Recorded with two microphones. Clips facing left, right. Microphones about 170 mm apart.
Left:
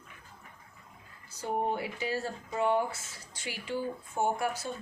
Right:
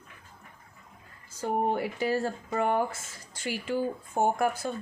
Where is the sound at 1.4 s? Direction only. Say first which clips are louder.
Right 4 dB; 50° right (ahead or behind).